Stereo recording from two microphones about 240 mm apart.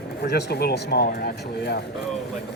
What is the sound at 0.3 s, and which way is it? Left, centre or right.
Speech, left.